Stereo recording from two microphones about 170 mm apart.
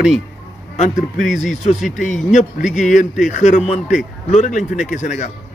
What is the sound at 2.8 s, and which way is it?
A man's voice, 45° left (ahead or behind).